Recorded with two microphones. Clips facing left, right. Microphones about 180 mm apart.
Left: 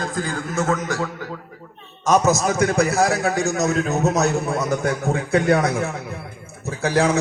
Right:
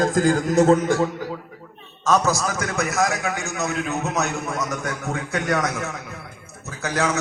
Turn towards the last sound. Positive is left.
turn(degrees=30)  # may be behind; listen again after turning